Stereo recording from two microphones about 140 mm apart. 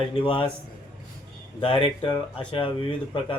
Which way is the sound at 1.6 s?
40° left (ahead or behind).